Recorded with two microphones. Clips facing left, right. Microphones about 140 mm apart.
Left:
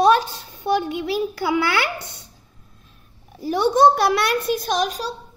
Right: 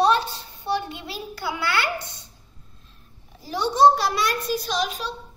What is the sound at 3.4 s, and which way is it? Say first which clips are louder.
A child's voice: left 2 dB; 55° left (ahead or behind).